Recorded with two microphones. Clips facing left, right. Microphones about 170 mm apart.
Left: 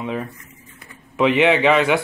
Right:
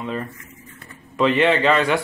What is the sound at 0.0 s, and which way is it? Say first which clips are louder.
Speech: left 1 dB; 10° left (ahead or behind).